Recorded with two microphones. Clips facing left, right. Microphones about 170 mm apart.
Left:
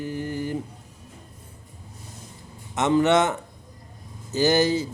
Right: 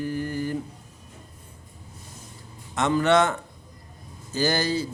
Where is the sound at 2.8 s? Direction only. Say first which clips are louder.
Left 1 dB; 20° left (ahead or behind).